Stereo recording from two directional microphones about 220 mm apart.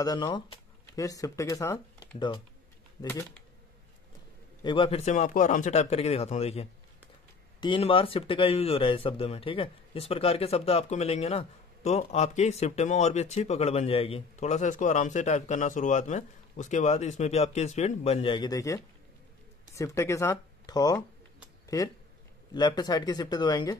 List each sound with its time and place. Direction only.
0.0 s speech: 20° left (ahead or behind)
4.6 s speech: 25° left (ahead or behind)